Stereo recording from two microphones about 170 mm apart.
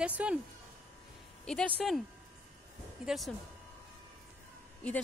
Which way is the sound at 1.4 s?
5° left (ahead or behind).